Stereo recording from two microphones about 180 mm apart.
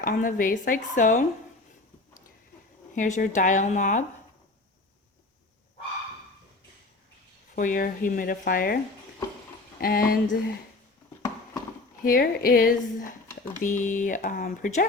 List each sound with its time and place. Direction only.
0.0 s speech: 50° left (ahead or behind)
2.9 s speech: 45° left (ahead or behind)
7.5 s speech: 45° left (ahead or behind)
9.8 s speech: 55° left (ahead or behind)
12.0 s speech: 50° left (ahead or behind)